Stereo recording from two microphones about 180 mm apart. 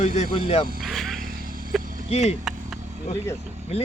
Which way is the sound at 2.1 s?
35° left (ahead or behind).